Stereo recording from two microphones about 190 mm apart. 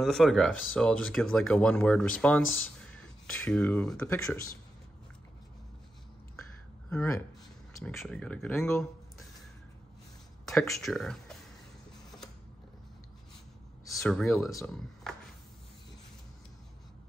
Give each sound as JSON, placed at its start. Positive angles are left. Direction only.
{"t": 0.0, "sound": "speech", "side_deg": 0}
{"t": 6.9, "sound": "speech", "side_deg": 5}
{"t": 10.4, "sound": "speech", "side_deg": 0}
{"t": 13.8, "sound": "speech", "side_deg": 5}